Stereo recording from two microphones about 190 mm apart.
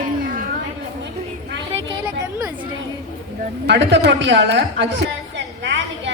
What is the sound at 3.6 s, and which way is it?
A woman's voice, 65° right (ahead or behind).